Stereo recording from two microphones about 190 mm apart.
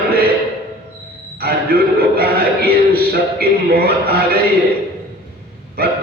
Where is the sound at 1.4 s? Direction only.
55° right (ahead or behind).